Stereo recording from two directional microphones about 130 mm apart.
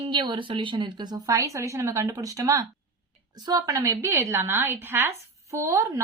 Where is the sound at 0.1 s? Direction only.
40° right (ahead or behind).